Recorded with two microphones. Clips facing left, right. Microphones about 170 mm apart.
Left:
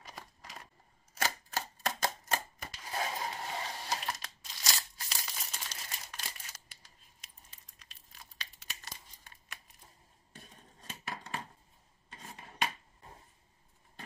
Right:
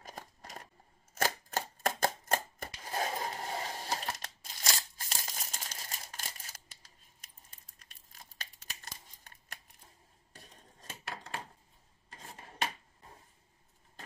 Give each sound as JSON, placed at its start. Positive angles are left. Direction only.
{"t": 0.0, "sound": "scissors", "side_deg": -45}
{"t": 1.1, "sound": "a sound", "side_deg": -50}
{"t": 7.2, "sound": "crumpling", "side_deg": -50}